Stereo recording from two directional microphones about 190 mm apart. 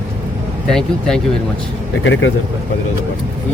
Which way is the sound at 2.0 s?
90° left.